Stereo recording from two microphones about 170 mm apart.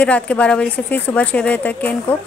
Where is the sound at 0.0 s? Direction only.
5° left (ahead or behind).